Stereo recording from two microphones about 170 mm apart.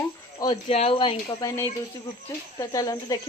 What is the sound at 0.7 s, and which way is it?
Speech, 35° left (ahead or behind).